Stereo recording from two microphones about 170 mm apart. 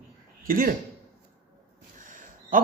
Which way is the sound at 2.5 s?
50° right (ahead or behind).